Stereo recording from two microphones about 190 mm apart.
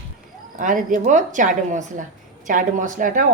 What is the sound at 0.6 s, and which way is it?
A woman's voice, 45° right (ahead or behind).